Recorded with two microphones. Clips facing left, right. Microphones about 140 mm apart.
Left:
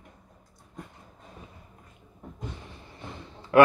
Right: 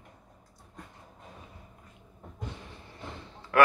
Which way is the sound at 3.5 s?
20° left (ahead or behind).